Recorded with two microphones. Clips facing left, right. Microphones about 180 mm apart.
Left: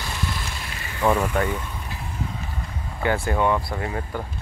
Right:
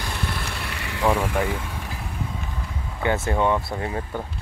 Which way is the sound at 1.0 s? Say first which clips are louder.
Left 1 dB; 10° right (ahead or behind).